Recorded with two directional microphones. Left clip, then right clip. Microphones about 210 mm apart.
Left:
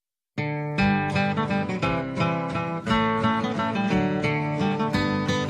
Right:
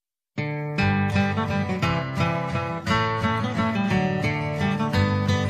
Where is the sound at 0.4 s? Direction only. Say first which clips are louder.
Left 1 dB; centre (ahead or behind).